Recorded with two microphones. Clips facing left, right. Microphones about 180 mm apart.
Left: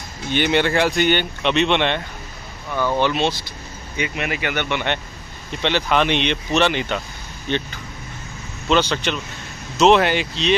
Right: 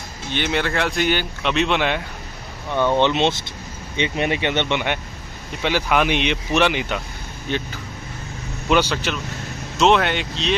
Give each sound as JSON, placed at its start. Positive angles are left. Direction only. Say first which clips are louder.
{"t": 0.3, "sound": "speech", "louder": "left 4 dB", "side_deg": 0}
{"t": 2.7, "sound": "speech", "louder": "right 2 dB", "side_deg": -25}
{"t": 5.6, "sound": "speech", "louder": "even", "side_deg": -10}
{"t": 8.6, "sound": "speech", "louder": "even", "side_deg": -10}